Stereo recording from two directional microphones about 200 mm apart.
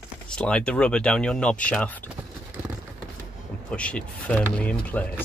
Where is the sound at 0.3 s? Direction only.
5° left (ahead or behind).